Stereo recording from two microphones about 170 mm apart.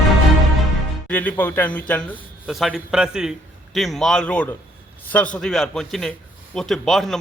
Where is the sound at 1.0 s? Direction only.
10° left (ahead or behind).